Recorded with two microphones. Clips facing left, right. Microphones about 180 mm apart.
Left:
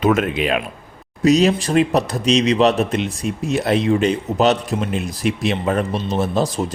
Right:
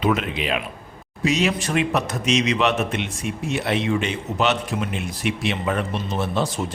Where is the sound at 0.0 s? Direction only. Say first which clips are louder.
Left 5 dB; 50° left (ahead or behind).